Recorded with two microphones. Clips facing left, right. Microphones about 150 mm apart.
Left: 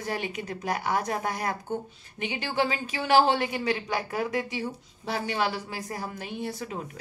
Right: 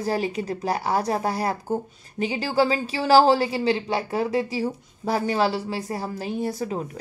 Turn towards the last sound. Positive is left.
turn(degrees=-35)  # may be behind; listen again after turning